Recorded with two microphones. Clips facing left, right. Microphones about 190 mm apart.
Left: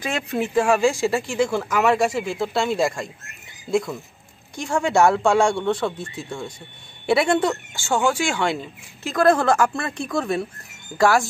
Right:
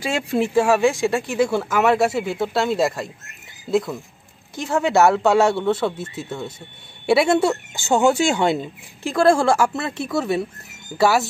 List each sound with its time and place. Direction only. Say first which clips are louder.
0.5 s speech: right 1 dB; 5° right (ahead or behind)
9.3 s speech: right 1 dB; 10° right (ahead or behind)